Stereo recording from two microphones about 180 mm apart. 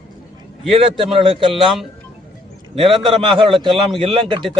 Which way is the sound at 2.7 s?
Centre (ahead or behind).